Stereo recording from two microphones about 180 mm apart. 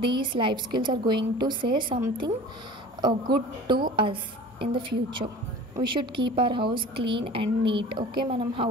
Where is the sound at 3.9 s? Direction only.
30° right (ahead or behind).